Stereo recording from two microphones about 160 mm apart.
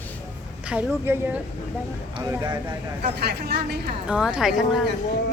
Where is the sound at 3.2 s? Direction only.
85° right.